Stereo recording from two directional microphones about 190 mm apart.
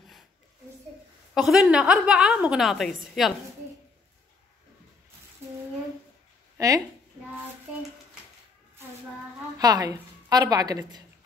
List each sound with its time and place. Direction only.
1.3 s a woman's voice: centre (ahead or behind)
6.6 s a woman's voice: 15° right (ahead or behind)
9.6 s a woman's voice: 20° right (ahead or behind)